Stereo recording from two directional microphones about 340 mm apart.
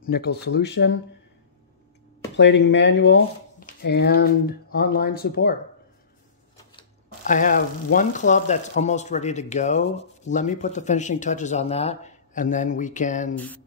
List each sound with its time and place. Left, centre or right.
0.0 s speech: left
2.3 s speech: left
6.7 s speech: centre